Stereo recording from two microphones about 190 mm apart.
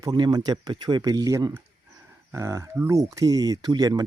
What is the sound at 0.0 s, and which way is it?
Speech, 20° right (ahead or behind).